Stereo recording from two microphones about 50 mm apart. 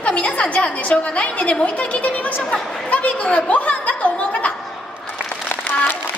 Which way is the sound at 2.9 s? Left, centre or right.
Left.